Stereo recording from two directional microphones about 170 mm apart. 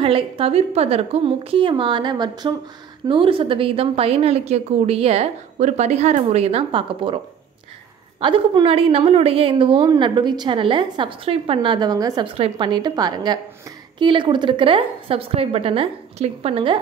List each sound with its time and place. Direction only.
0.0 s a woman's voice: 35° right (ahead or behind)
8.2 s a woman's voice: 30° right (ahead or behind)